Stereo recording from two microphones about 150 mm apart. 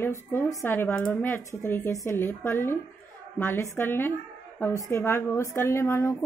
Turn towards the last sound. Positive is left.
turn(degrees=15)  # may be behind; listen again after turning